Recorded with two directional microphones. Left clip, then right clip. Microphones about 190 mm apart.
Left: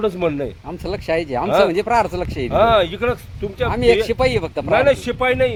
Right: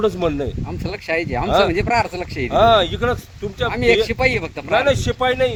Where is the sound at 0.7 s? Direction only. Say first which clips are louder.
Left 4 dB; 20° left (ahead or behind).